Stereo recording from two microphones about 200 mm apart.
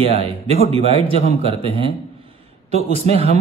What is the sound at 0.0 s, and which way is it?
A man's voice, 30° right (ahead or behind).